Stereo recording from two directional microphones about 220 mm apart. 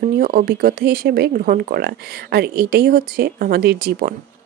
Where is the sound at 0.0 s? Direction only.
40° right (ahead or behind).